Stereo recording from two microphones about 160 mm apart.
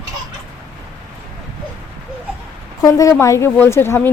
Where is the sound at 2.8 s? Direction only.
20° left (ahead or behind).